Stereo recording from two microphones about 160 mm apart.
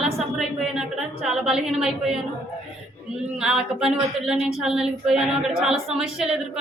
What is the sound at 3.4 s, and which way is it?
A woman's voice, 5° right (ahead or behind).